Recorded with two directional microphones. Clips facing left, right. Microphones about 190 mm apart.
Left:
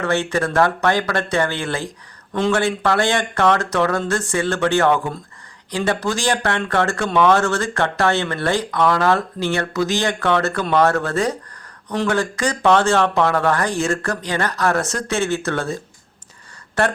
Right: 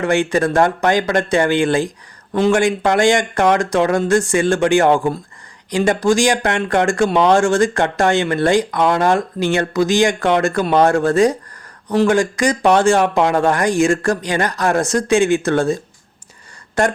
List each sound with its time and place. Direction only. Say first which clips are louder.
0.0 s speech: right 4 dB; 15° right (ahead or behind)